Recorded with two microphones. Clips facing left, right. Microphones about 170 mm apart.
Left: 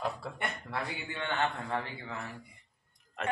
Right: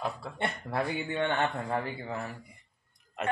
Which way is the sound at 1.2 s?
35° right (ahead or behind).